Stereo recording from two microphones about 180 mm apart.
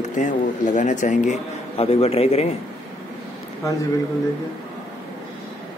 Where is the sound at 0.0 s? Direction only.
45° left (ahead or behind).